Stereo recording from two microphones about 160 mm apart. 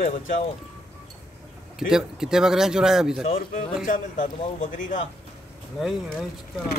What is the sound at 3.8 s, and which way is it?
Speech, 55° left (ahead or behind).